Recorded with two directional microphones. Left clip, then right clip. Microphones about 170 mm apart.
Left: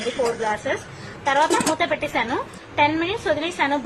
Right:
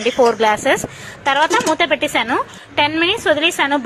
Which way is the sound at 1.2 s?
25° right (ahead or behind).